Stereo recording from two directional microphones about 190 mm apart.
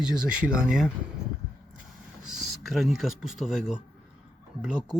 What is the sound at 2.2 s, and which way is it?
Speech, centre (ahead or behind).